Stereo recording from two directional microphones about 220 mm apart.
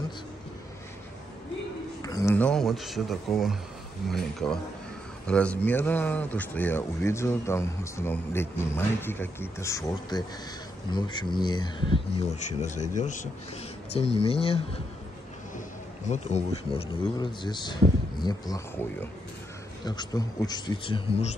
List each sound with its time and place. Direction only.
2.0 s a man's voice: 15° left (ahead or behind)
12.4 s a man's voice: 35° left (ahead or behind)
16.1 s a man's voice: 30° left (ahead or behind)